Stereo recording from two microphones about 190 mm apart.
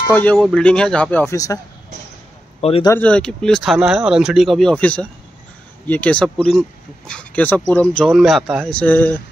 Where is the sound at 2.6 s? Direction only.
30° left (ahead or behind).